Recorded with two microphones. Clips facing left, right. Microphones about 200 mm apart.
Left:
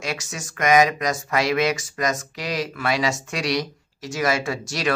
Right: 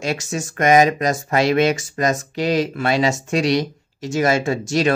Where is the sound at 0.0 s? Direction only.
30° right (ahead or behind).